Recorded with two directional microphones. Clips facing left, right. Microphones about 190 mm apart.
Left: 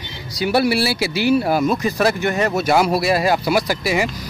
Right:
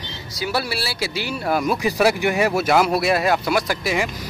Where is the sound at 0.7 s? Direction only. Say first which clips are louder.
Left 7 dB; 15° left (ahead or behind).